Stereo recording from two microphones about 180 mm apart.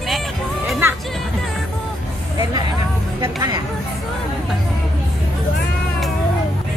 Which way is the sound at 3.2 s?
25° right (ahead or behind).